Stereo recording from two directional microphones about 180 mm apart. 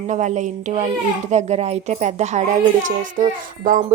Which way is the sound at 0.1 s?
40° right (ahead or behind).